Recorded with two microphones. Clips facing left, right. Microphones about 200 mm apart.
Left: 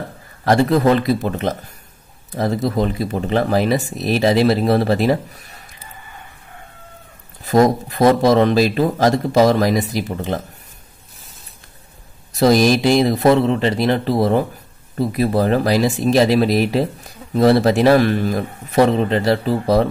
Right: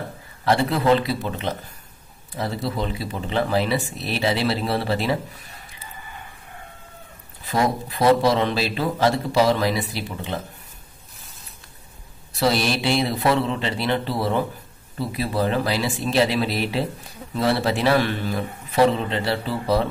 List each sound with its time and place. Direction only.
0.5 s a man's voice: 45° left (ahead or behind)
7.4 s a man's voice: 45° left (ahead or behind)
12.3 s a man's voice: 40° left (ahead or behind)